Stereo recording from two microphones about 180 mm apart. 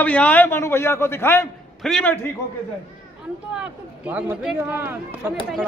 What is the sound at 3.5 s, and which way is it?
Speech, 5° right (ahead or behind).